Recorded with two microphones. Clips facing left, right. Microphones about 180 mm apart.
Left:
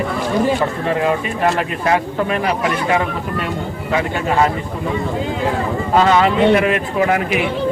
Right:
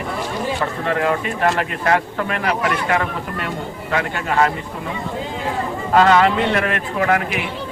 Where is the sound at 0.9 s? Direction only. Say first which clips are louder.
Right 1 dB; 20° left (ahead or behind).